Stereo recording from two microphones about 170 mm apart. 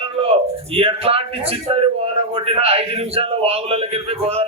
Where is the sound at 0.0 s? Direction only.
35° right (ahead or behind).